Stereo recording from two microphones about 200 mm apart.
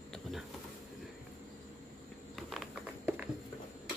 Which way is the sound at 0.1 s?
Centre (ahead or behind).